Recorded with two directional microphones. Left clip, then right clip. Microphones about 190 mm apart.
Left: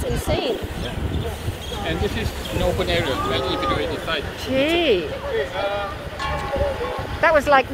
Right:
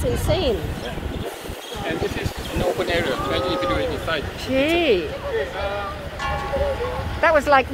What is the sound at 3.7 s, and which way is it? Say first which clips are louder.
Speech: even; 45° right (ahead or behind).